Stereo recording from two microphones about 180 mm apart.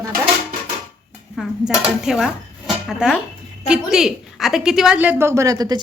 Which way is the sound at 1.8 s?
Centre (ahead or behind).